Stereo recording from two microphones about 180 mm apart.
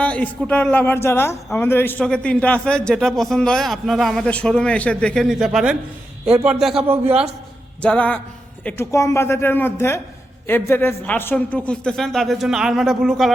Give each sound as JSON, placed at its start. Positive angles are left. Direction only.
{"t": 0.0, "sound": "a man's voice", "side_deg": 5}